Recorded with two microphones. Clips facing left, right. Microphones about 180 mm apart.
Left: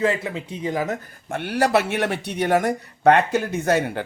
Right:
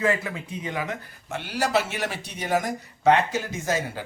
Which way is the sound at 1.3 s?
60° left (ahead or behind).